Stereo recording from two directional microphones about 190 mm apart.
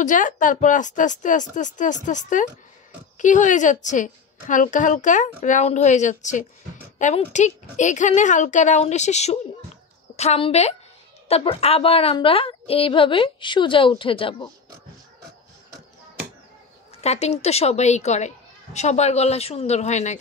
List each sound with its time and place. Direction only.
0.0 s a woman's voice: 45° left (ahead or behind); by 14.5 s 25° left (ahead or behind)
17.0 s a woman's voice: 35° left (ahead or behind)